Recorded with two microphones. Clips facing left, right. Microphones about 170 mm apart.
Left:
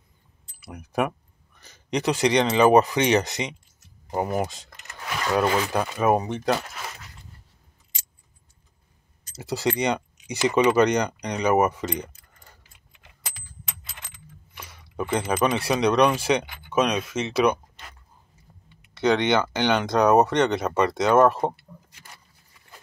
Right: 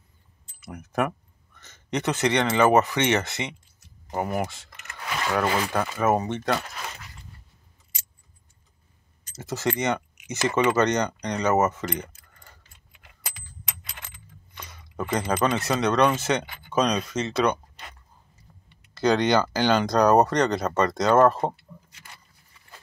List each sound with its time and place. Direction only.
0.6 s speech: 10° left (ahead or behind)
9.4 s speech: 15° left (ahead or behind)
14.5 s a sound: 10° left (ahead or behind)
15.5 s speech: 10° left (ahead or behind)
18.9 s speech: centre (ahead or behind)